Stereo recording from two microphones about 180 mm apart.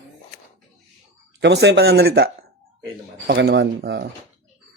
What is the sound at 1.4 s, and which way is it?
Speech, 70° right (ahead or behind).